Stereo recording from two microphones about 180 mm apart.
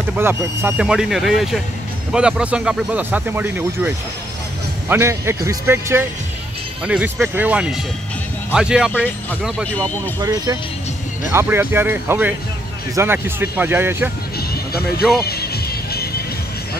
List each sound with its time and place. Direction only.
0.1 s speech: 10° right (ahead or behind)
8.9 s speech: 10° left (ahead or behind)
10.2 s speech: 20° right (ahead or behind)
14.5 s music: 60° left (ahead or behind)